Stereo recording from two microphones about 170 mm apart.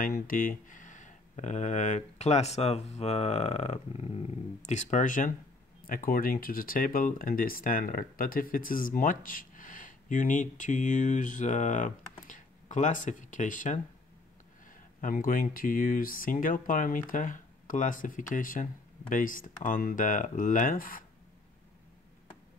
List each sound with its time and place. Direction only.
0.0 s speech: 55° left (ahead or behind)
15.0 s speech: 55° left (ahead or behind)